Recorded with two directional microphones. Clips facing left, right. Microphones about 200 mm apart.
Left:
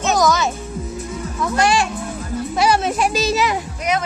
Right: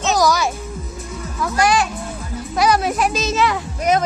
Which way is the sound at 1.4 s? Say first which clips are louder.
Even; centre (ahead or behind).